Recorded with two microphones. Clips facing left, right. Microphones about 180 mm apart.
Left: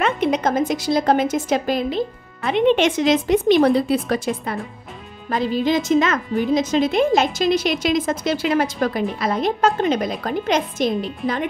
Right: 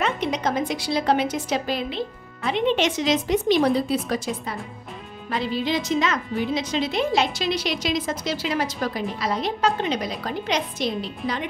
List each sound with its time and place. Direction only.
0.0 s a woman's voice: 55° left (ahead or behind)
5.3 s a woman's voice: 45° left (ahead or behind)